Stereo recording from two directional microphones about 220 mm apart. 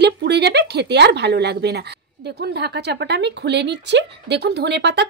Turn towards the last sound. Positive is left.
turn(degrees=-50)  # may be behind; listen again after turning